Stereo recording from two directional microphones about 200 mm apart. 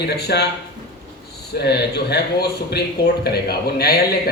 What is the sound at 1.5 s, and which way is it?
A man's voice, 55° left (ahead or behind).